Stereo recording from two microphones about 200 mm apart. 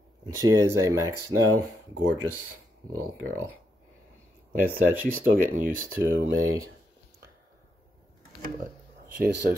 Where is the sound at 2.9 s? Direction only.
90° right.